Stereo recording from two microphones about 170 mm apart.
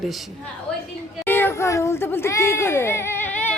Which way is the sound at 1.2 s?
10° left (ahead or behind).